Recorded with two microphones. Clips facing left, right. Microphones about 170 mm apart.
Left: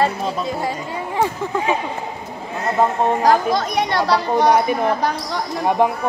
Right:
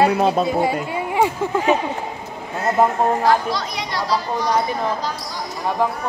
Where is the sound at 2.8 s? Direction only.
10° right (ahead or behind).